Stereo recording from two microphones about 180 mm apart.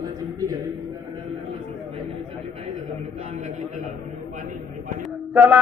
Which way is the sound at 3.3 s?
45° right (ahead or behind).